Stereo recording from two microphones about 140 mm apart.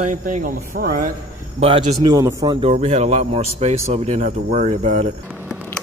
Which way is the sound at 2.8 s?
55° right (ahead or behind).